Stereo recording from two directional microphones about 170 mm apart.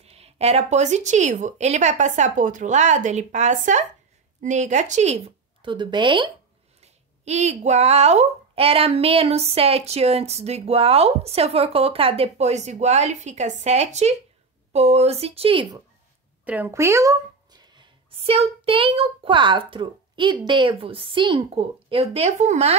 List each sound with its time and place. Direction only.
0.0 s speech: 35° right (ahead or behind)
6.8 s speech: 40° right (ahead or behind)
16.4 s a sound: 10° right (ahead or behind)
18.1 s speech: 35° right (ahead or behind)